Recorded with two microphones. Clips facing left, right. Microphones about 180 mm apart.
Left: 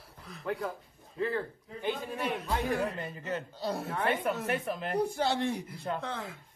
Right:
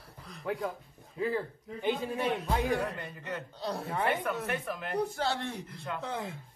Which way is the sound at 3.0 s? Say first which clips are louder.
Left 3 dB; 25° left (ahead or behind).